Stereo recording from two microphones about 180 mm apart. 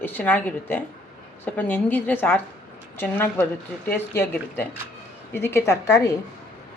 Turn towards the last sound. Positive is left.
turn(degrees=20)  # may be behind; listen again after turning